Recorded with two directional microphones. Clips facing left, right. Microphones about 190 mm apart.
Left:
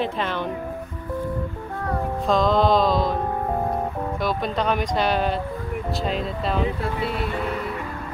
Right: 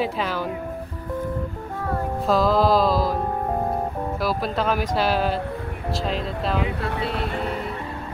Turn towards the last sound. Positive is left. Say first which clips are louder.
# even
turn(degrees=0)  # may be behind; listen again after turning